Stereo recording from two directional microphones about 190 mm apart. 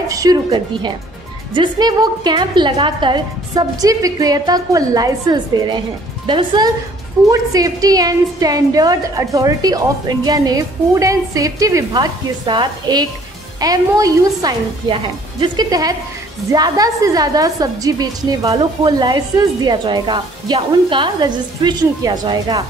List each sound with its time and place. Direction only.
0.1 s a woman's voice: 20° right (ahead or behind)